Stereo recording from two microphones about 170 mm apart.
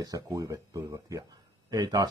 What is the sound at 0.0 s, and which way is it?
Speech, 20° right (ahead or behind).